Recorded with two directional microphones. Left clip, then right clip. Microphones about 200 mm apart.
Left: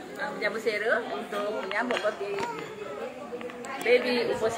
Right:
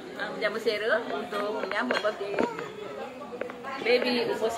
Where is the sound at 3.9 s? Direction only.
10° right (ahead or behind).